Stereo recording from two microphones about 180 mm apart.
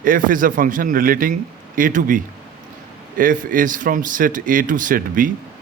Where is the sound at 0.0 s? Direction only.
50° right (ahead or behind).